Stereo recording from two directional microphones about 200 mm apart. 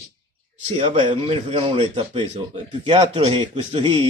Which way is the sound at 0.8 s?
25° right (ahead or behind).